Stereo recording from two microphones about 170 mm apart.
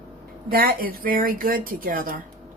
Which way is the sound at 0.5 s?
60° right (ahead or behind).